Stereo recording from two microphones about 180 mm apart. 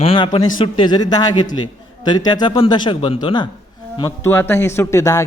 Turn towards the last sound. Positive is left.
turn(degrees=15)  # may be behind; listen again after turning